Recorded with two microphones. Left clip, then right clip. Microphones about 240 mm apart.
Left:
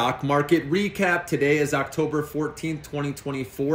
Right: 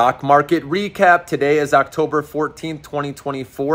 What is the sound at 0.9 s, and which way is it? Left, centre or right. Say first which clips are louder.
Speech: right 13 dB; centre.